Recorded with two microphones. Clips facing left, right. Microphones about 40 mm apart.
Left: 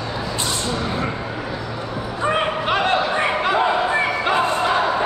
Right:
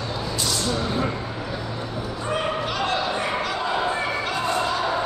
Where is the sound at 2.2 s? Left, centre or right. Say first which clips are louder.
Left 6 dB; left.